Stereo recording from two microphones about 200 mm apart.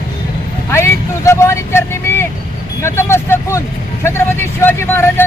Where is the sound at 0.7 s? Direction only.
15° left (ahead or behind).